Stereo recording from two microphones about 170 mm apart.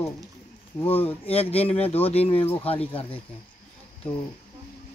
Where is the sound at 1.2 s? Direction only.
35° left (ahead or behind).